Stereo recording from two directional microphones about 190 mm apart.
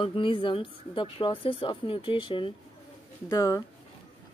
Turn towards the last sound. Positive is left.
turn(degrees=15)  # may be behind; listen again after turning